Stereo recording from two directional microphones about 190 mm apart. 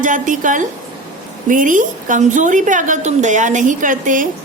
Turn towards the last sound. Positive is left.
turn(degrees=-45)  # may be behind; listen again after turning